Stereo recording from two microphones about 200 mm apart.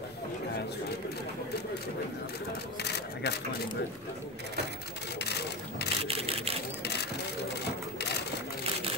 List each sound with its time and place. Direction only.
2.8 s cash register: 55° left (ahead or behind)
5.2 s sewing machine: 55° left (ahead or behind)
6.0 s sewing machine: 30° right (ahead or behind)
6.8 s vehicle: 55° left (ahead or behind)